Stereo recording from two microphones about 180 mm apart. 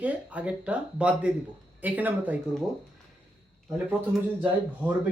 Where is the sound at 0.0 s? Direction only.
10° right (ahead or behind).